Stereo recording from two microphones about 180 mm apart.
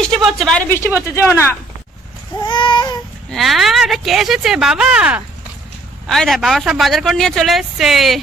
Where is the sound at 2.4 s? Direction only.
25° left (ahead or behind).